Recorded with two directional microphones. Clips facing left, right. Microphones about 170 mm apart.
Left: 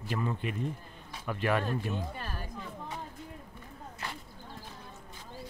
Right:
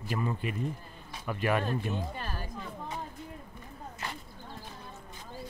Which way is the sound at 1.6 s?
25° right (ahead or behind).